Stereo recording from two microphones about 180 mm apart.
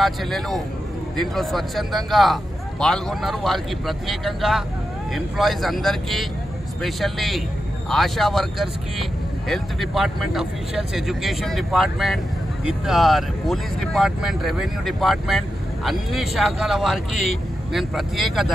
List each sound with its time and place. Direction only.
0.0 s speech: centre (ahead or behind)